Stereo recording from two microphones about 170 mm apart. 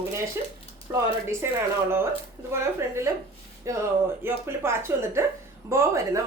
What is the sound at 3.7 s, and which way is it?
Speech, 20° right (ahead or behind).